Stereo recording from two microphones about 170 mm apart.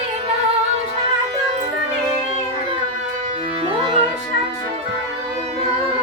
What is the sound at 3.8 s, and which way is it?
Music, 30° right (ahead or behind).